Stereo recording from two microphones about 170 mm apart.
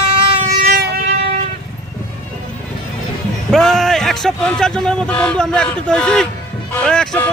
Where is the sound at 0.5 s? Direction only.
60° right (ahead or behind).